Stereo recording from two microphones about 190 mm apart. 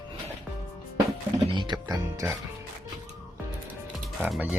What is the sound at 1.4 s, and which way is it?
Speech, 25° right (ahead or behind).